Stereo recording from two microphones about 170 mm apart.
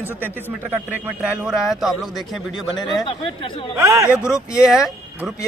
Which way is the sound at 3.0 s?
30° left (ahead or behind).